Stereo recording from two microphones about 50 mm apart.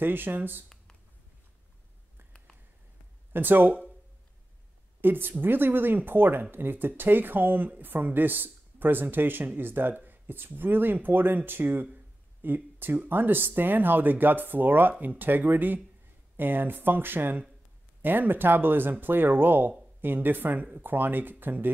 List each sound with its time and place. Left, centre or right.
0.0 s speech: right
3.3 s speech: right
5.0 s speech: right